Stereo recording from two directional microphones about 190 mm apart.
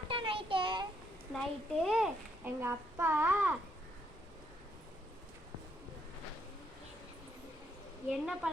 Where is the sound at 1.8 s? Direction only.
Centre (ahead or behind).